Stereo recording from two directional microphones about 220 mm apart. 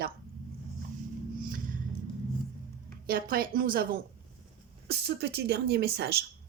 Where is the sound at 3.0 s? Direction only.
40° right (ahead or behind).